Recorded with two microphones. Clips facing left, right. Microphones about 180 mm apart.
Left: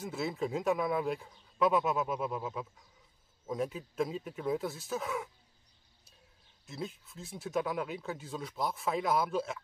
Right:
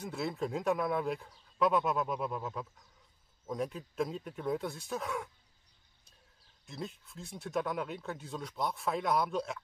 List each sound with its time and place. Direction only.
0.0 s speech: centre (ahead or behind)
6.6 s speech: centre (ahead or behind)